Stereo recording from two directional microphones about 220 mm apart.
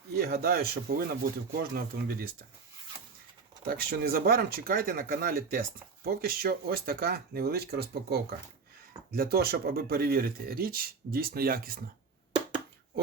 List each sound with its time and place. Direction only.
0.2 s speech: 45° right (ahead or behind)
3.7 s speech: 40° right (ahead or behind)